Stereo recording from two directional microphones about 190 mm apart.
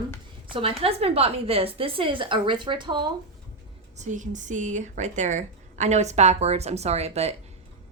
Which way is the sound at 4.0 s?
40° right (ahead or behind).